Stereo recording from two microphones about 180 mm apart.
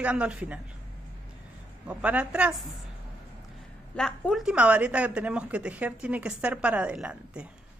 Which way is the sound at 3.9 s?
5° left (ahead or behind).